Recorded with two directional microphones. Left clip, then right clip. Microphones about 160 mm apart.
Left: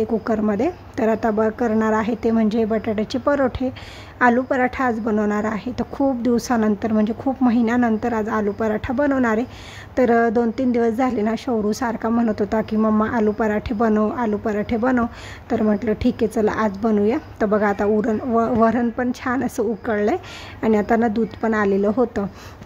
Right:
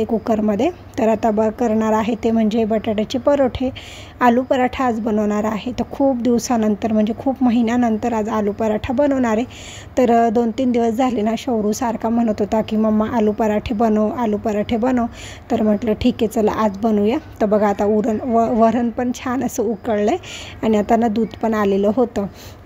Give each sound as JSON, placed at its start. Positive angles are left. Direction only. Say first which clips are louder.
{"t": 0.0, "sound": "a woman's voice", "louder": "right 2 dB", "side_deg": -15}